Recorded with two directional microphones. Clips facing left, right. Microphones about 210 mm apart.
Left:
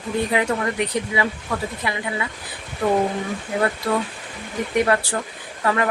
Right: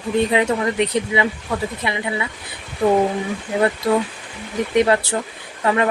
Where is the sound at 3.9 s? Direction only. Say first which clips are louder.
Right 4 dB; 20° right (ahead or behind).